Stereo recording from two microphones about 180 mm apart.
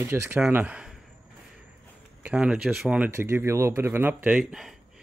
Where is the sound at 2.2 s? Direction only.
5° right (ahead or behind).